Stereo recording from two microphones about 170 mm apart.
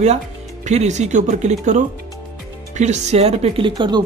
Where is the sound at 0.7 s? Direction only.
40° right (ahead or behind).